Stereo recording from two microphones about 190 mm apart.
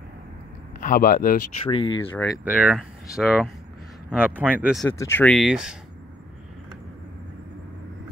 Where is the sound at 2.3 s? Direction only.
5° right (ahead or behind).